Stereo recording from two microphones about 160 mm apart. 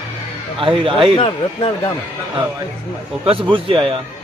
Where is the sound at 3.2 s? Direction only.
35° right (ahead or behind).